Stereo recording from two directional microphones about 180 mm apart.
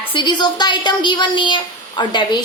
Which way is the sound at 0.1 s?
25° left (ahead or behind).